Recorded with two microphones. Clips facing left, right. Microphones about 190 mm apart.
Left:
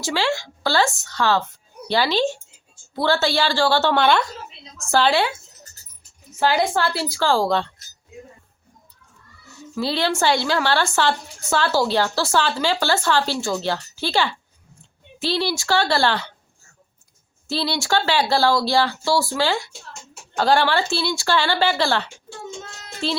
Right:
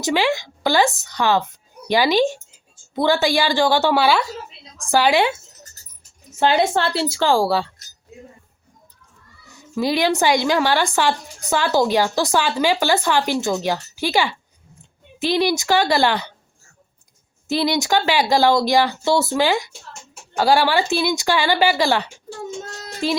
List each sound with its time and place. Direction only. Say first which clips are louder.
0.0 s a woman's voice: right 3 dB; 15° right (ahead or behind)
6.4 s a woman's voice: right 2 dB; 25° right (ahead or behind); by 7.7 s 5° right (ahead or behind)
9.7 s a woman's voice: right 4 dB; 15° right (ahead or behind)
17.5 s a woman's voice: right 4 dB; 15° right (ahead or behind)